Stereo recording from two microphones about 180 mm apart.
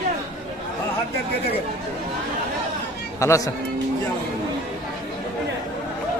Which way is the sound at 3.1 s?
15° left (ahead or behind).